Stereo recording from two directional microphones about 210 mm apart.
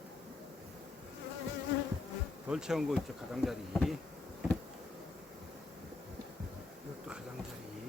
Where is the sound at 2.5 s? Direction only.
5° right (ahead or behind).